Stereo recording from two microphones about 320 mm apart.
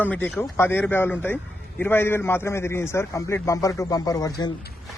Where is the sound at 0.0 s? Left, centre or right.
Centre.